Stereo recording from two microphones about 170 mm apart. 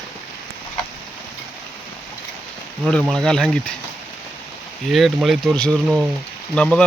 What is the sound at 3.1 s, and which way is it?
Speech, 5° left (ahead or behind).